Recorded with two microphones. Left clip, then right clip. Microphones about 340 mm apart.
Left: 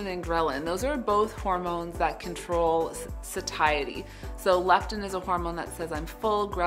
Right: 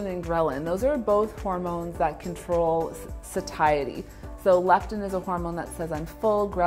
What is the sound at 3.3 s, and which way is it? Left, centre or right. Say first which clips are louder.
Speech: right 3 dB; right.